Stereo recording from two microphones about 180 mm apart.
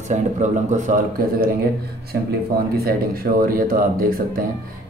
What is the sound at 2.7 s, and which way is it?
Speech, 55° right (ahead or behind).